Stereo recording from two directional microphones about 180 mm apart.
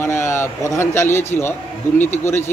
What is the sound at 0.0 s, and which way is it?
A man's voice, 15° left (ahead or behind).